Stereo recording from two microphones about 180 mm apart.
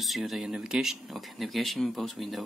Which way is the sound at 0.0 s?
Centre (ahead or behind).